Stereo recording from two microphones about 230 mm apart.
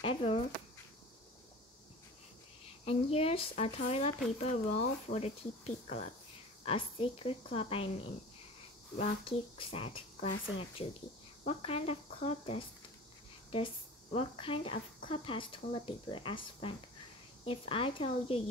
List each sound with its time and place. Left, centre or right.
0.0 s speech: left
2.8 s speech: left
11.4 s speech: left
14.1 s speech: left